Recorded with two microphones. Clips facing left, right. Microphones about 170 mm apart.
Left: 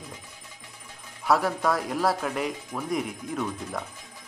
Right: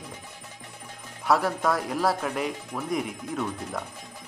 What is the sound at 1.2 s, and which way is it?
Speech, centre (ahead or behind).